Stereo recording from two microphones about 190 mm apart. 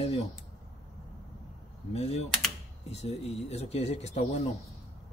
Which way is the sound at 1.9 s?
35° left (ahead or behind).